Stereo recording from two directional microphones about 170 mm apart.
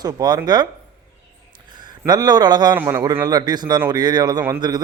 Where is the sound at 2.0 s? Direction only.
25° right (ahead or behind).